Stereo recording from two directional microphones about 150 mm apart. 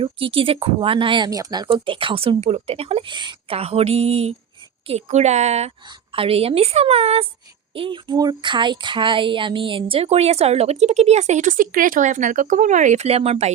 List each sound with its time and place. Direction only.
0.0 s speech: 40° right (ahead or behind)
7.8 s speech: 30° right (ahead or behind)